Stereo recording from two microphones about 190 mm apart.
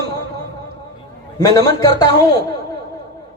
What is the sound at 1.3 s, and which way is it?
Speech, 20° left (ahead or behind).